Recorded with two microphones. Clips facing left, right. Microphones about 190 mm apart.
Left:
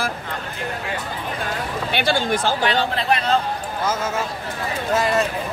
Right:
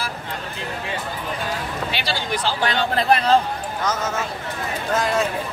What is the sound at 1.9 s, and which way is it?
Speech, 55° left (ahead or behind).